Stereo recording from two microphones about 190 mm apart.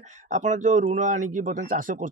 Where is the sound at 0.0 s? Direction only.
40° right (ahead or behind).